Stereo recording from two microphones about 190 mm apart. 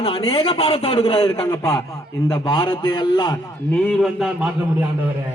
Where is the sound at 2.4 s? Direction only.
25° left (ahead or behind).